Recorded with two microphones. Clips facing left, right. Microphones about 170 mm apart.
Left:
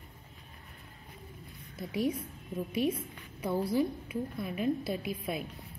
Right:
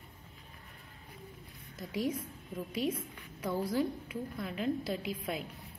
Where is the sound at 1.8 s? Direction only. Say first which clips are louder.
Left 3 dB; 10° left (ahead or behind).